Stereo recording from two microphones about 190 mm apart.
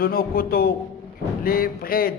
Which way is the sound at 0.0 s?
50° left (ahead or behind).